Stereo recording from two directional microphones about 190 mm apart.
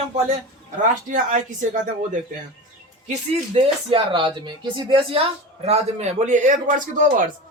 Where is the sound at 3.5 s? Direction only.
25° right (ahead or behind).